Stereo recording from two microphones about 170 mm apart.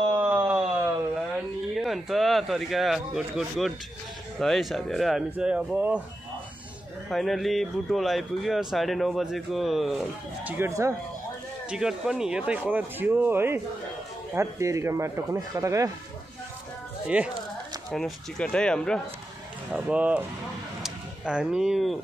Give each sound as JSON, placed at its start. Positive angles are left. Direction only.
{"t": 0.1, "sound": "a sound", "side_deg": -10}
{"t": 1.8, "sound": "speech", "side_deg": 0}
{"t": 7.1, "sound": "speech", "side_deg": 0}
{"t": 10.6, "sound": "speech", "side_deg": -15}
{"t": 11.7, "sound": "speech", "side_deg": -5}
{"t": 17.1, "sound": "speech", "side_deg": -5}
{"t": 17.9, "sound": "speech", "side_deg": 5}
{"t": 19.7, "sound": "speech", "side_deg": -5}
{"t": 20.8, "sound": "a sound", "side_deg": -5}